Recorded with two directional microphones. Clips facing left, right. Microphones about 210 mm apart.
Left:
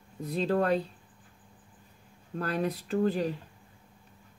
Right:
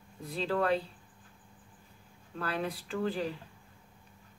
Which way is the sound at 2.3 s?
40° left (ahead or behind).